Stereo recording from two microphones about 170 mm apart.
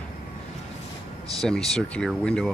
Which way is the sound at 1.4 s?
5° left (ahead or behind).